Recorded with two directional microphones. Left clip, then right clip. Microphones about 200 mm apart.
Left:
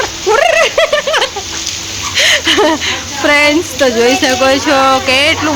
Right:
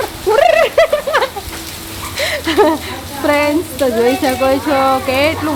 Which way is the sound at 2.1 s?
Centre (ahead or behind).